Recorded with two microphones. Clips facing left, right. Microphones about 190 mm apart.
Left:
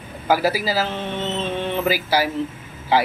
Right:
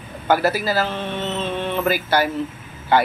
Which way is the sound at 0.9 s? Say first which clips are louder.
Even; 15° left (ahead or behind).